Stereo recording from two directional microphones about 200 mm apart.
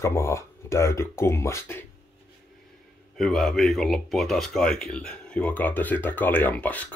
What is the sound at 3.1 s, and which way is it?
Speech, centre (ahead or behind).